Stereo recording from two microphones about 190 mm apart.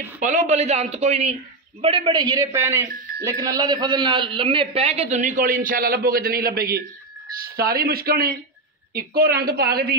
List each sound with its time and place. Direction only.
0.2 s a man's voice: 40° right (ahead or behind); by 9.9 s 55° right (ahead or behind)